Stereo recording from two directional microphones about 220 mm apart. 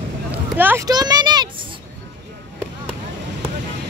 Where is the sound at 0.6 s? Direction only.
10° right (ahead or behind).